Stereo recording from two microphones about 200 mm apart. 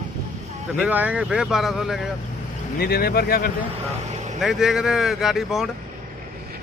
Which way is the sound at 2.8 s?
50° left (ahead or behind).